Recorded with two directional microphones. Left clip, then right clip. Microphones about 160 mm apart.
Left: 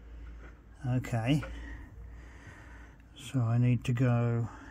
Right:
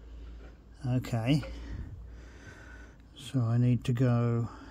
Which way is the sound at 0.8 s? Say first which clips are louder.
Right 1 dB; 5° right (ahead or behind).